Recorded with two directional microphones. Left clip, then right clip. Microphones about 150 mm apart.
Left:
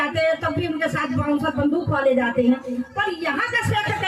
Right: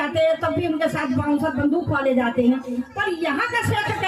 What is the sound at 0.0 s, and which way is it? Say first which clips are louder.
Music: right 1 dB; 40° right (ahead or behind).